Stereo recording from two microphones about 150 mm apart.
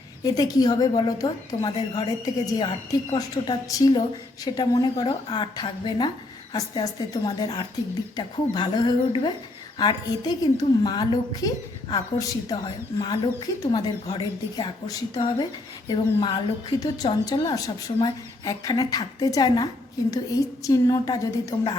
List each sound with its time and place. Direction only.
0.3 s a woman's voice: 25° left (ahead or behind)